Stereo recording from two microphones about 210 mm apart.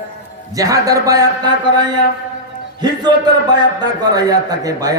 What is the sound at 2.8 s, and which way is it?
Speech, 20° right (ahead or behind).